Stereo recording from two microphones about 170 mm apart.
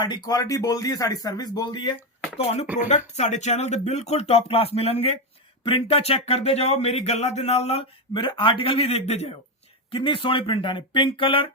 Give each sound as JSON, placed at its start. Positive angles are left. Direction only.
{"t": 0.0, "sound": "speech", "side_deg": 25}
{"t": 2.4, "sound": "speech", "side_deg": 35}